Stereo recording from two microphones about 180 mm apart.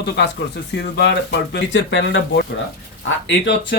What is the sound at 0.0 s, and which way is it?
Speech, 70° left (ahead or behind).